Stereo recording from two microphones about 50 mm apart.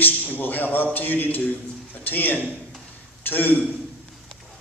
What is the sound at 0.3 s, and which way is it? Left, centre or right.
A man's voice, left.